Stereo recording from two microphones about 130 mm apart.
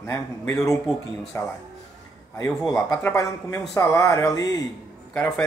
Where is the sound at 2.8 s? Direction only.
25° left (ahead or behind).